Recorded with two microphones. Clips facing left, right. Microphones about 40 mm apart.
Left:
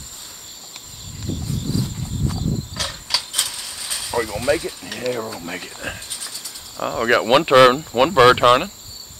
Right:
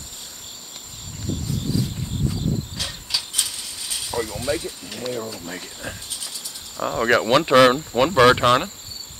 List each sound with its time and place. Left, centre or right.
2.8 s a sound: left
4.1 s speech: left
5.2 s cricket: left
6.8 s speech: centre
7.2 s speech: left